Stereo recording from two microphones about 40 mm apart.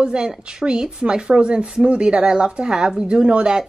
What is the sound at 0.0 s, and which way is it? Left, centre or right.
Speech, right.